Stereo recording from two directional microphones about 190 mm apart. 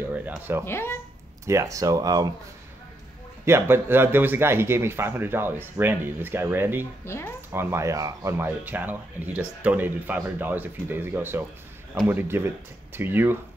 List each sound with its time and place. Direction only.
0.1 s speech: 10° right (ahead or behind)
0.7 s speech: 15° left (ahead or behind)
1.4 s speech: 15° right (ahead or behind)
3.4 s speech: 10° right (ahead or behind)